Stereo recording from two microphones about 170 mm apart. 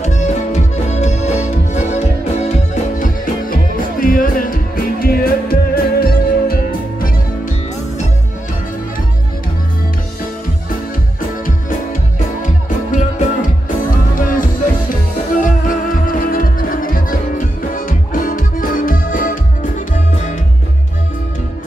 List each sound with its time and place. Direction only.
0.0 s music: 45° left (ahead or behind); by 7.1 s 60° left (ahead or behind)
11.4 s music: 50° left (ahead or behind)